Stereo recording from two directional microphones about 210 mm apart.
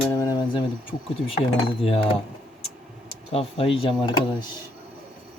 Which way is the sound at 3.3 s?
25° left (ahead or behind).